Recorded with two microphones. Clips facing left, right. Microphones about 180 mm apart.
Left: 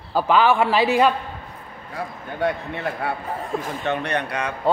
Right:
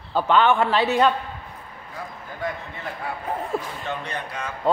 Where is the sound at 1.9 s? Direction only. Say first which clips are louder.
Left 6 dB; 70° left (ahead or behind).